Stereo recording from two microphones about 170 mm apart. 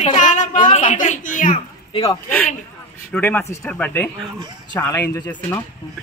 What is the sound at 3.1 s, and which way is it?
Speech, 10° left (ahead or behind).